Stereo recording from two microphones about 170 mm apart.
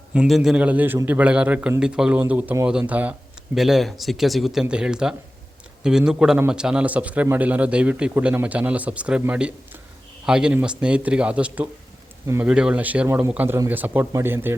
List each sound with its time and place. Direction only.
0.1 s a man's voice: 5° right (ahead or behind)